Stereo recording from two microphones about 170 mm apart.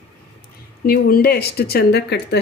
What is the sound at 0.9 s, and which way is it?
Speech, 65° left (ahead or behind).